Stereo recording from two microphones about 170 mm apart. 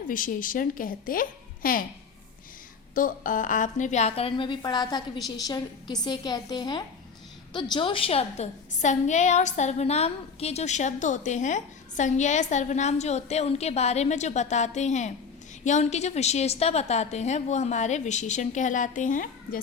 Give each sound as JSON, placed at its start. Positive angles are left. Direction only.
{"t": 0.1, "sound": "a woman's voice", "side_deg": 55}
{"t": 2.9, "sound": "a woman's voice", "side_deg": 50}